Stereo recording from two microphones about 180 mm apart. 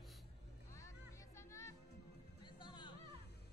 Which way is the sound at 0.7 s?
15° left (ahead or behind).